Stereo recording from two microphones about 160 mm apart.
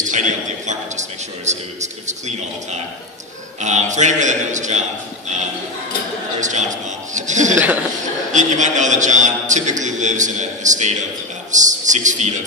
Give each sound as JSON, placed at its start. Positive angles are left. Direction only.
{"t": 0.0, "sound": "a man's voice", "side_deg": -50}
{"t": 6.4, "sound": "a man's voice", "side_deg": -50}